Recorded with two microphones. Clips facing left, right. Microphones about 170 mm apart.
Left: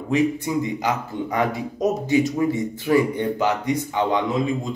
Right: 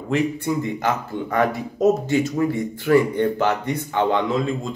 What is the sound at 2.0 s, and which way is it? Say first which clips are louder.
Speech: left 1 dB; 20° left (ahead or behind).